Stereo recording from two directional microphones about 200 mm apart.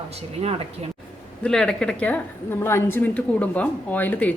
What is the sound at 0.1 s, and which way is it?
Speech, 30° right (ahead or behind).